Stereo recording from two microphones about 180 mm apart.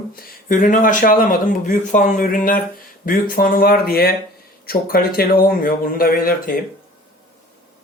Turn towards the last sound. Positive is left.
turn(degrees=55)  # may be behind; listen again after turning